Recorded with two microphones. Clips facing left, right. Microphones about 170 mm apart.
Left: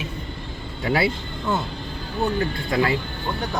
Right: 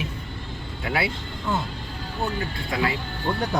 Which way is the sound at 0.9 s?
35° left (ahead or behind).